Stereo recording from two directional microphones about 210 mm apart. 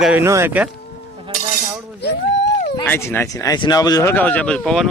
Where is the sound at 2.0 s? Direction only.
50° left (ahead or behind).